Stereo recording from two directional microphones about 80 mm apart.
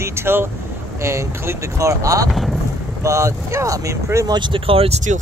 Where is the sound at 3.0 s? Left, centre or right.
Right.